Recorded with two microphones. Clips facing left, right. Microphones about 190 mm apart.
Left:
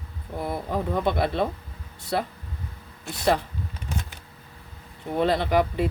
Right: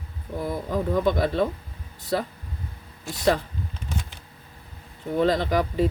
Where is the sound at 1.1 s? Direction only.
40° right (ahead or behind).